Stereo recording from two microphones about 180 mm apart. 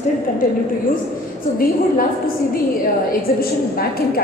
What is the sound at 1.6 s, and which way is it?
Speech, 55° left (ahead or behind).